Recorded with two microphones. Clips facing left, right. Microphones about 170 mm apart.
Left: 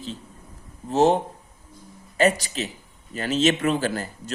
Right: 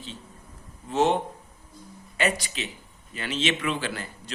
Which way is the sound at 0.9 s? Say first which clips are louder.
Left 4 dB; 40° left (ahead or behind).